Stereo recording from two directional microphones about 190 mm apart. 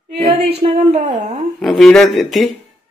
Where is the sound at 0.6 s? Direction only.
35° right (ahead or behind).